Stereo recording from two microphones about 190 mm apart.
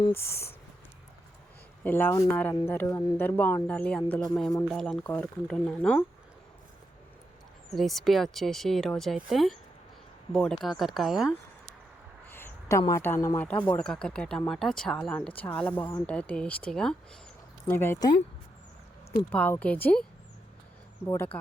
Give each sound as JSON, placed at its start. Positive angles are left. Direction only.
{"t": 0.1, "sound": "speech", "side_deg": 15}
{"t": 1.8, "sound": "speech", "side_deg": 10}
{"t": 7.7, "sound": "speech", "side_deg": 0}
{"t": 12.3, "sound": "a sound", "side_deg": 10}
{"t": 12.9, "sound": "speech", "side_deg": 15}
{"t": 19.3, "sound": "speech", "side_deg": 5}